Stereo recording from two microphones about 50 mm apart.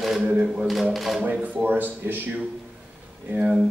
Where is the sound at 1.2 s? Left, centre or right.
Right.